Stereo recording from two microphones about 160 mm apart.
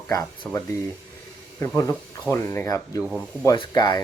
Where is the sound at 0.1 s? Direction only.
20° left (ahead or behind).